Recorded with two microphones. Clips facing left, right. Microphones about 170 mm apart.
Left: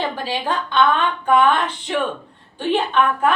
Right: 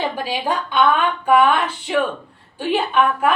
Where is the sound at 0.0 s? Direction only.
10° right (ahead or behind).